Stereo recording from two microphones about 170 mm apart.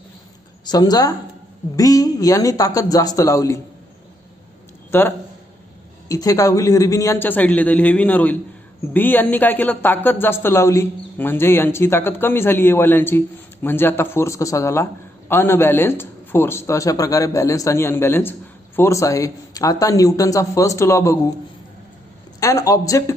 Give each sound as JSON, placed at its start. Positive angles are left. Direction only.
{"t": 0.7, "sound": "speech", "side_deg": 25}
{"t": 4.9, "sound": "speech", "side_deg": 15}
{"t": 22.4, "sound": "speech", "side_deg": 20}